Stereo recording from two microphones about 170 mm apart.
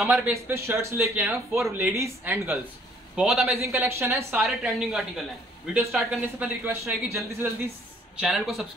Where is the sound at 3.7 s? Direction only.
15° right (ahead or behind).